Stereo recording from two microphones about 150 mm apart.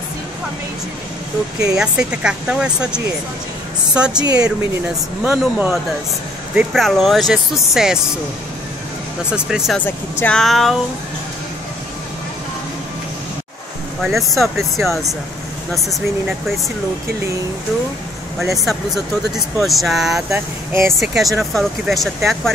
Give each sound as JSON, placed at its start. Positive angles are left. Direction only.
{"t": 1.8, "sound": "speech", "side_deg": -5}
{"t": 9.3, "sound": "speech", "side_deg": -5}
{"t": 9.8, "sound": "speech", "side_deg": 10}
{"t": 14.0, "sound": "speech", "side_deg": 0}
{"t": 16.3, "sound": "speech", "side_deg": 0}
{"t": 18.4, "sound": "speech", "side_deg": 0}
{"t": 20.2, "sound": "speech", "side_deg": -15}
{"t": 21.0, "sound": "speech", "side_deg": 0}